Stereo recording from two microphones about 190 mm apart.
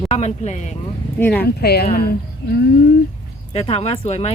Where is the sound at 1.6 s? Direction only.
55° left (ahead or behind).